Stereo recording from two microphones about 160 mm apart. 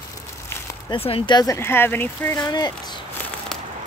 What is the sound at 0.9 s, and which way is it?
Speech, 35° left (ahead or behind).